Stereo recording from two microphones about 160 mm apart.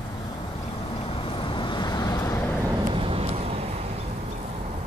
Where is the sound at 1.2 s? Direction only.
30° left (ahead or behind).